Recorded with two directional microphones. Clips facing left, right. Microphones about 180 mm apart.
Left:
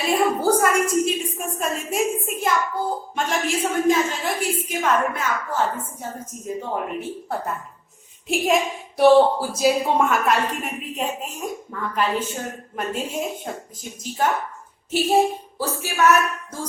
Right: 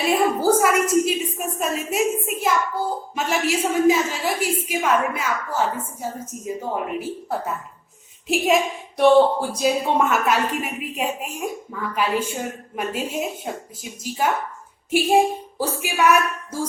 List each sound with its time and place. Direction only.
0.0 s a woman's voice: centre (ahead or behind)